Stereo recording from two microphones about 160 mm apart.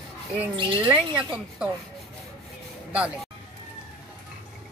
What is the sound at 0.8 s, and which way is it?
Speech, 5° right (ahead or behind).